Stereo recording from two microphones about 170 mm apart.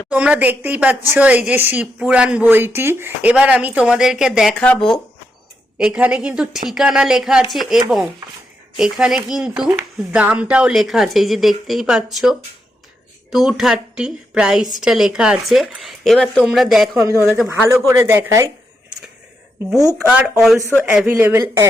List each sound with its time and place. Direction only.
0.1 s speech: 10° right (ahead or behind)
5.7 s speech: 5° right (ahead or behind)
17.1 s speech: 15° right (ahead or behind)
20.1 s speech: 5° right (ahead or behind)